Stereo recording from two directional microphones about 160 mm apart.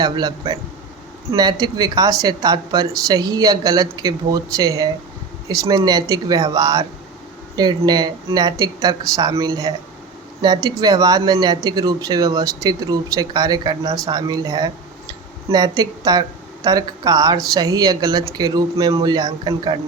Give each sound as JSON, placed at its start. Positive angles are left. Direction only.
{"t": 0.0, "sound": "speech", "side_deg": -25}